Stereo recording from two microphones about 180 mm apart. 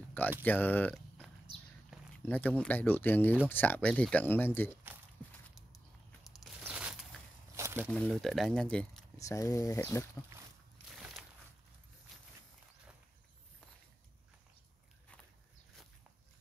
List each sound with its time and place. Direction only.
0.4 s speech: 10° left (ahead or behind)
2.2 s speech: 10° left (ahead or behind)
6.6 s a sound: 5° right (ahead or behind)
7.9 s speech: centre (ahead or behind)
9.2 s speech: 20° left (ahead or behind)
12.1 s a sound: centre (ahead or behind)